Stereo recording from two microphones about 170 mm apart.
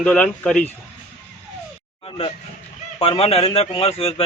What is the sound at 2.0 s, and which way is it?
A man's voice, 35° left (ahead or behind).